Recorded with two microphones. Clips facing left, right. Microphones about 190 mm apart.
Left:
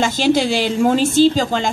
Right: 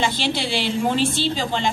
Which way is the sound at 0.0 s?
45° left (ahead or behind).